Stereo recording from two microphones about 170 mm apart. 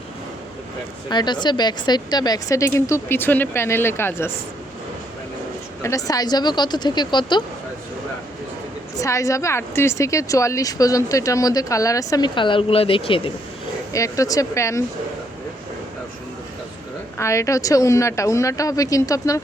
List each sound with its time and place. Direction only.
1.1 s a woman's voice: 25° left (ahead or behind)
5.8 s a woman's voice: 20° left (ahead or behind)
9.0 s a woman's voice: 20° left (ahead or behind)
13.9 s a woman's voice: 20° left (ahead or behind)
17.2 s a woman's voice: 15° left (ahead or behind)